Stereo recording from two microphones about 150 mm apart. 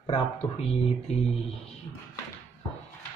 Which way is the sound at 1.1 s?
45° left (ahead or behind).